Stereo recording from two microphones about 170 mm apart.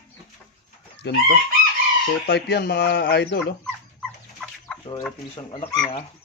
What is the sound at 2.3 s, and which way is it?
Speech, 70° left (ahead or behind).